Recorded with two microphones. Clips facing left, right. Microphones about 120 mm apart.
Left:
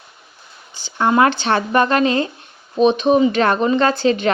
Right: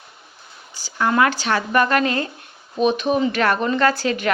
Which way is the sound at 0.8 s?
25° left (ahead or behind).